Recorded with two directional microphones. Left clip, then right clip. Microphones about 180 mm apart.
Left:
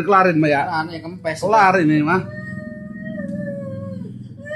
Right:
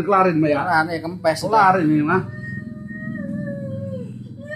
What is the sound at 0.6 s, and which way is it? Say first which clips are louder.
Speech: right 4 dB; 25° right (ahead or behind).